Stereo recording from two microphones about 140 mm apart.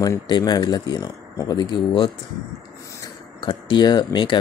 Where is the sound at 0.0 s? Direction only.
25° left (ahead or behind).